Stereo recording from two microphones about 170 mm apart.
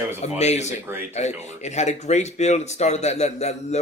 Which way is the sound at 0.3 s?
40° left (ahead or behind).